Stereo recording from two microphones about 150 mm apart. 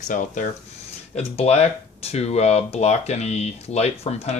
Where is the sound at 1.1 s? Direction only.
45° left (ahead or behind).